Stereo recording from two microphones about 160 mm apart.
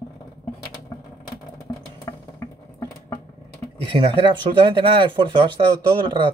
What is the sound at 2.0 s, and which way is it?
Music, 20° left (ahead or behind).